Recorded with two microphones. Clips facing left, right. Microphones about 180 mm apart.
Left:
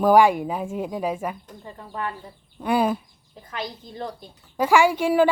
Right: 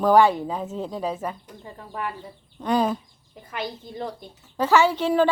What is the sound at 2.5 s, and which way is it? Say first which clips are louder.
Speech: left 1 dB; 10° left (ahead or behind).